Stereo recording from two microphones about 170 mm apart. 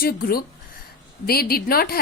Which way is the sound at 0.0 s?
60° left (ahead or behind).